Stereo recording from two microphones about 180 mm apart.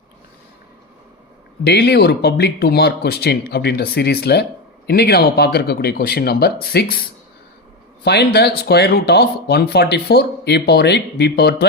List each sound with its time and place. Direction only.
1.6 s speech: 65° left (ahead or behind)
8.0 s speech: 65° left (ahead or behind)